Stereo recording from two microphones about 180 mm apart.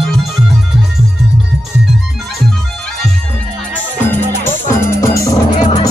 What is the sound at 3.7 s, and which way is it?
Music, 10° left (ahead or behind).